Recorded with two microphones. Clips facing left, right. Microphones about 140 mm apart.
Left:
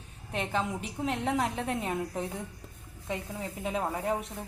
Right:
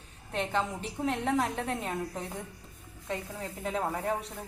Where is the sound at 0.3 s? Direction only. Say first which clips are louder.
Even; 10° left (ahead or behind).